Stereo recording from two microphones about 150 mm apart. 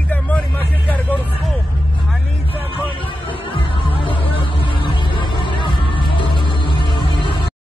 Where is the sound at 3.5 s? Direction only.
35° left (ahead or behind).